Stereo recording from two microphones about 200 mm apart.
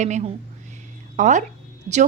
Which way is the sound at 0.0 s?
35° right (ahead or behind).